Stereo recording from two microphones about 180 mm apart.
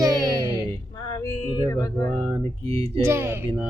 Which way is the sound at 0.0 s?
20° right (ahead or behind).